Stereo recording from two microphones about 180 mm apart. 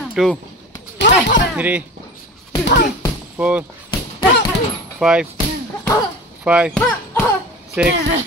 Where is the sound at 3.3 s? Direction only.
10° right (ahead or behind).